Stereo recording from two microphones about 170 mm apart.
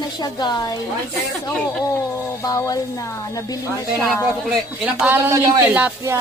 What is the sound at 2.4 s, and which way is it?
A woman's voice, 20° left (ahead or behind).